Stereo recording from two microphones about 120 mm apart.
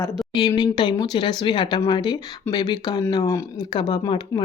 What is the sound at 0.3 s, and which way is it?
Speech, 35° left (ahead or behind).